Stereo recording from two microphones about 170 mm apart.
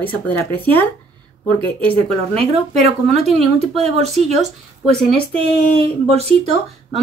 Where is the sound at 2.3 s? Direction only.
40° right (ahead or behind).